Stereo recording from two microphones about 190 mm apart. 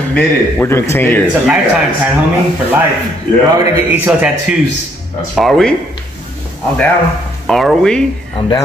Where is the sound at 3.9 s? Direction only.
5° right (ahead or behind).